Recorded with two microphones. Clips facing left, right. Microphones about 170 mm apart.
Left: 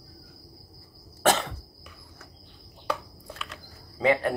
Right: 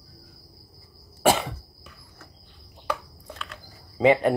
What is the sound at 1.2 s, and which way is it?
Cough, 10° right (ahead or behind).